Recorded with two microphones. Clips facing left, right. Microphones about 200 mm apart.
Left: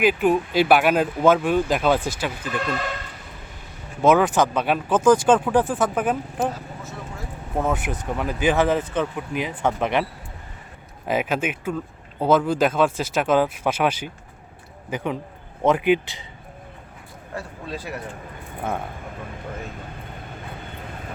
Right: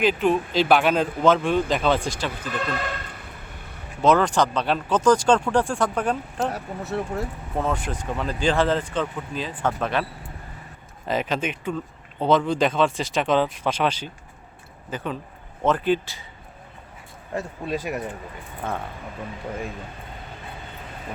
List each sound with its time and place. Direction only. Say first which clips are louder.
0.0 s speech: left 2 dB; 10° left (ahead or behind)
4.0 s speech: left 2 dB; 5° left (ahead or behind)
6.5 s speech: right 6 dB; 65° right (ahead or behind)
7.5 s speech: left 3 dB; 10° left (ahead or behind)
17.3 s speech: right 5 dB; 15° right (ahead or behind)